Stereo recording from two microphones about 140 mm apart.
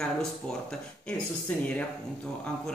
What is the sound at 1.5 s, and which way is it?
Speech, 10° left (ahead or behind).